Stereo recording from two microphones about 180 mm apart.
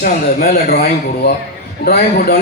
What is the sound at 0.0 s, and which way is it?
Speech, 55° left (ahead or behind).